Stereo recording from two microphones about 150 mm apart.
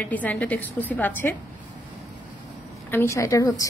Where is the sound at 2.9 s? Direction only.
20° left (ahead or behind).